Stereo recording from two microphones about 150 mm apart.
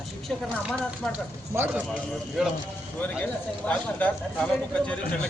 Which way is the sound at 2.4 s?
Centre (ahead or behind).